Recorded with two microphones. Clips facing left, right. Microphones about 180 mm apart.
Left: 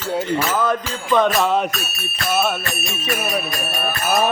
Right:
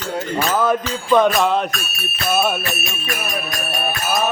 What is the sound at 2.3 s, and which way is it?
Music, 10° right (ahead or behind).